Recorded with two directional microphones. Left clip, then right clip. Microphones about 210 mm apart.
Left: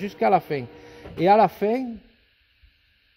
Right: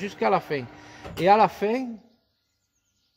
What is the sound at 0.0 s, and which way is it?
Speech, 45° left (ahead or behind).